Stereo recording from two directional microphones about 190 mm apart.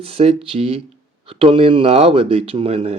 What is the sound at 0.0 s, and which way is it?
Speech, 30° right (ahead or behind).